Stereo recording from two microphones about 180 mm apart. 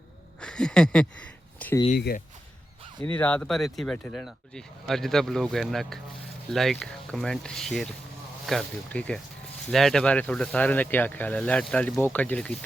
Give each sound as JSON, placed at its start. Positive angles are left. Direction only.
{"t": 0.4, "sound": "speech", "side_deg": 5}
{"t": 2.0, "sound": "speech", "side_deg": 60}
{"t": 3.0, "sound": "speech", "side_deg": 10}